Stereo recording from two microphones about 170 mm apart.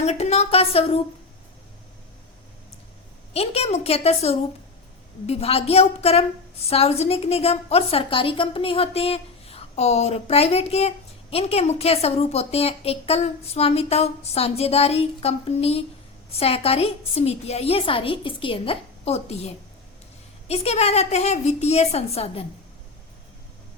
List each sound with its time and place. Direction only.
0.0 s a woman's voice: 40° left (ahead or behind)
3.3 s a woman's voice: 35° left (ahead or behind)
20.5 s a woman's voice: 35° left (ahead or behind)